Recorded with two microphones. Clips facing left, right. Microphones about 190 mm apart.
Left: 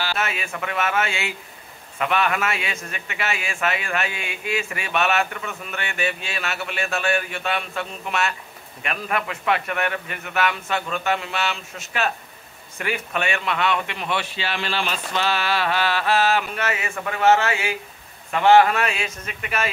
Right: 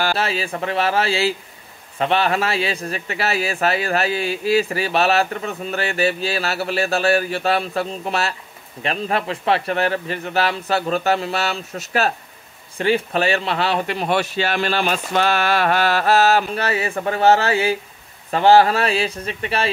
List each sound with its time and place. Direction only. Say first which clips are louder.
0.1 s a man's voice: right 5 dB; 30° right (ahead or behind)